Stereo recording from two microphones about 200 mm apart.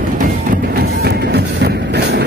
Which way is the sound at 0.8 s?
55° right (ahead or behind).